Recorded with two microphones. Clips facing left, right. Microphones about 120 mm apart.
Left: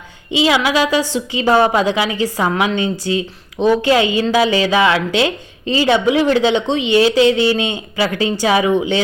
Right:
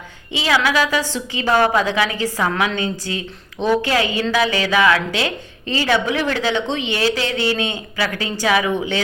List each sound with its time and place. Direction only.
0.3 s a woman's voice: 20° left (ahead or behind)